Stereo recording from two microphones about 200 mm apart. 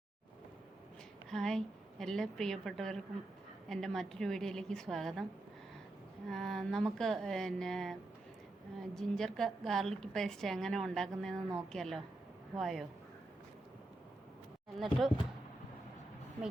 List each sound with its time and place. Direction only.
1.3 s a woman's voice: centre (ahead or behind)
6.2 s a woman's voice: centre (ahead or behind)
14.8 s a woman's voice: centre (ahead or behind)